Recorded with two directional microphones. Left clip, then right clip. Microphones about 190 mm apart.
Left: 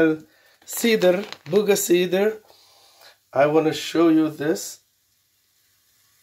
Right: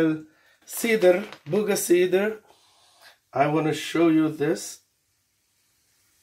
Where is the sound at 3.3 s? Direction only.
55° left (ahead or behind).